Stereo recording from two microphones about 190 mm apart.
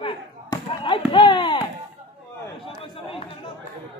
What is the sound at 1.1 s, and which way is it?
Speech, 25° left (ahead or behind).